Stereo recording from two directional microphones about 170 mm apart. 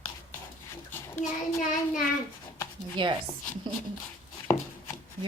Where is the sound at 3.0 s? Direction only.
30° right (ahead or behind).